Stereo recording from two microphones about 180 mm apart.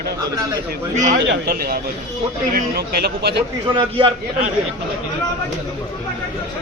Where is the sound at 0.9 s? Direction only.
45° right (ahead or behind).